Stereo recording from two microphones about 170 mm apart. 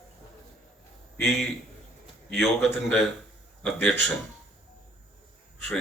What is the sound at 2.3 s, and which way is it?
Speech, centre (ahead or behind).